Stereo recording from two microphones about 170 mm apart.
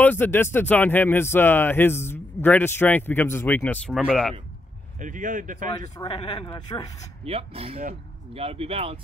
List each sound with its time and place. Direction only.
0.0 s speech: 10° left (ahead or behind)
4.9 s a man's voice: 50° right (ahead or behind)
6.0 s speech: 30° left (ahead or behind)
7.2 s speech: 35° right (ahead or behind)